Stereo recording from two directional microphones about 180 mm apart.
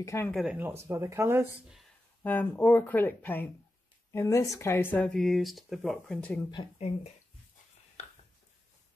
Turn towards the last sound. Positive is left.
turn(degrees=30)  # may be behind; listen again after turning